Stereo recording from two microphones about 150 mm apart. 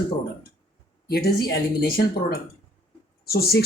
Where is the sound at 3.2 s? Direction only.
90° left.